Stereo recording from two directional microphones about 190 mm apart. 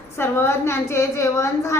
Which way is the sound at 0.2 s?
15° left (ahead or behind).